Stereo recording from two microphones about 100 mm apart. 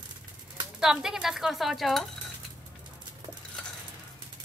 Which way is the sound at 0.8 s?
5° right (ahead or behind).